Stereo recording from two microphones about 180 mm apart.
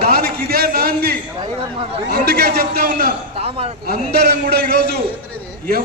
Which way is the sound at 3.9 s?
60° right (ahead or behind).